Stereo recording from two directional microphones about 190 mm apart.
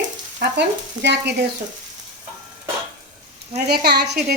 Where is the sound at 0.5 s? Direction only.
65° right (ahead or behind).